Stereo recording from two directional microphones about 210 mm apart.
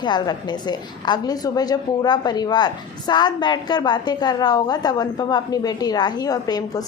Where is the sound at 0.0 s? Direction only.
20° left (ahead or behind).